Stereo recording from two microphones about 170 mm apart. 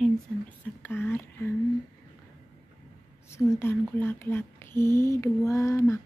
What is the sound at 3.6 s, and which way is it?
Speech, 15° left (ahead or behind).